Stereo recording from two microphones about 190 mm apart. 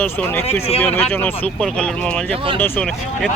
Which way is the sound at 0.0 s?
10° left (ahead or behind).